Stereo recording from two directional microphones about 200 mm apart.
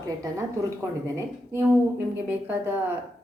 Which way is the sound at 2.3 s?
10° right (ahead or behind).